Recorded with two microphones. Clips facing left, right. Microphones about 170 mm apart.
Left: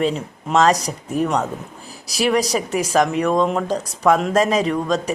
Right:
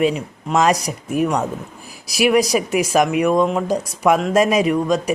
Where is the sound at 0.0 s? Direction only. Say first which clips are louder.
Right 2 dB; 10° right (ahead or behind).